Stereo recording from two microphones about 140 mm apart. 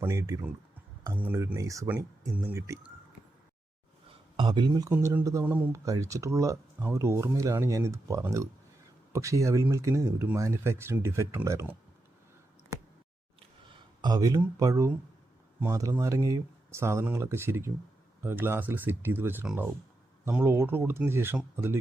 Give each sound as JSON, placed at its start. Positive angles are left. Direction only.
{"t": 0.0, "sound": "speech", "side_deg": -20}
{"t": 4.4, "sound": "speech", "side_deg": -35}
{"t": 14.0, "sound": "speech", "side_deg": -25}